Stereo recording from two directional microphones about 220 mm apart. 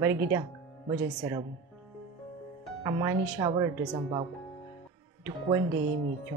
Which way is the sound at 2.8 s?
15° right (ahead or behind).